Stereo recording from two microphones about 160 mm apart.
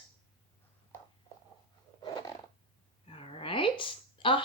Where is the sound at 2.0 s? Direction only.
25° left (ahead or behind).